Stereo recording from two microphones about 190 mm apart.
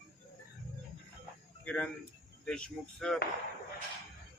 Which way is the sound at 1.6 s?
5° left (ahead or behind).